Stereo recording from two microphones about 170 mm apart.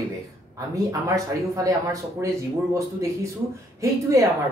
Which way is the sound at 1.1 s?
20° right (ahead or behind).